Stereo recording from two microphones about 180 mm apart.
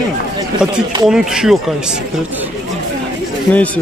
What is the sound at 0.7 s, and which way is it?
Speech, 5° right (ahead or behind).